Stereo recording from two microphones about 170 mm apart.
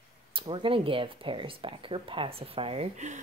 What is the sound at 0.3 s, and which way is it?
Speech, 30° right (ahead or behind).